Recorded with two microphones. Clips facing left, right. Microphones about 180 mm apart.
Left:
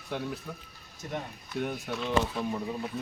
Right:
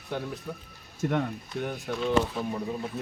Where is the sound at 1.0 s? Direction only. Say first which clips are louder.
Right 9 dB; 70° right (ahead or behind).